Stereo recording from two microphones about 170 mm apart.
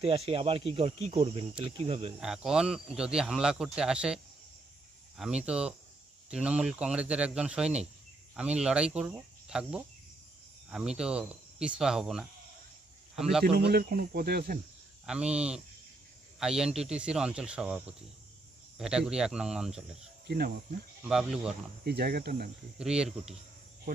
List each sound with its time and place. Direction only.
0.0 s speech: 30° right (ahead or behind)
2.2 s a man's voice: 5° right (ahead or behind)
13.4 s speech: 70° right (ahead or behind)
15.0 s speech: 5° right (ahead or behind)
20.2 s speech: 65° right (ahead or behind)
21.0 s speech: 5° right (ahead or behind)
21.8 s speech: 70° right (ahead or behind)
22.8 s speech: 5° right (ahead or behind)